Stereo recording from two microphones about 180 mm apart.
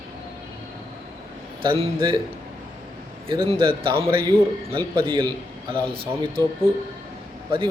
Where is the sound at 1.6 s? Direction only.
30° right (ahead or behind).